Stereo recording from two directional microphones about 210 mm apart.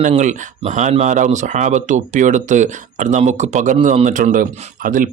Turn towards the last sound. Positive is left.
turn(degrees=-40)  # may be behind; listen again after turning